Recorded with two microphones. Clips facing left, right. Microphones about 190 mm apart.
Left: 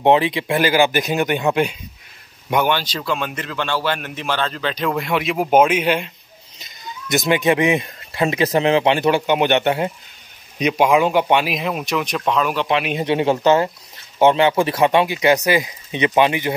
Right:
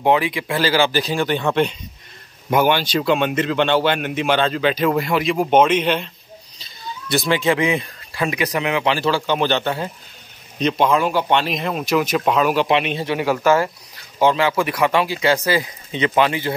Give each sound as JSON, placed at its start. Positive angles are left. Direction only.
{"t": 0.0, "sound": "speech", "side_deg": 25}
{"t": 2.5, "sound": "speech", "side_deg": -5}
{"t": 3.0, "sound": "speech", "side_deg": -25}
{"t": 6.6, "sound": "speech", "side_deg": 20}
{"t": 10.6, "sound": "speech", "side_deg": 10}
{"t": 12.9, "sound": "speech", "side_deg": 25}